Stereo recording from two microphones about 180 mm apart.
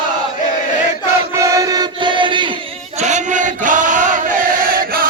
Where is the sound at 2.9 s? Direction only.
40° right (ahead or behind).